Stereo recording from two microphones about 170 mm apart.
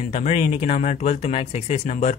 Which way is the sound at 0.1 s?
40° left (ahead or behind).